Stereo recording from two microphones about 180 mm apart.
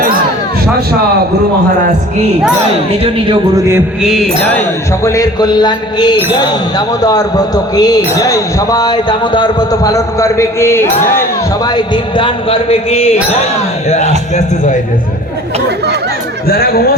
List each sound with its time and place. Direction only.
3.0 s a man's voice: 30° right (ahead or behind)
4.0 s mantra: centre (ahead or behind)
5.0 s speech: 20° left (ahead or behind); by 13.1 s 35° left (ahead or behind)
16.5 s speech: 60° left (ahead or behind)